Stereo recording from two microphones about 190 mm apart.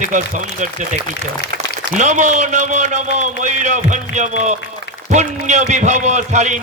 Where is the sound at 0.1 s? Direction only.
40° right (ahead or behind).